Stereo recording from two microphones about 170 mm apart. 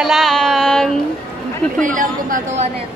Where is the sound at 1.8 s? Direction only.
50° right (ahead or behind).